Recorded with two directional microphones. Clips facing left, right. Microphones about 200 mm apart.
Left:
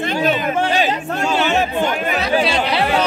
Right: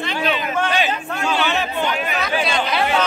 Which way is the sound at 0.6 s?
35° left (ahead or behind).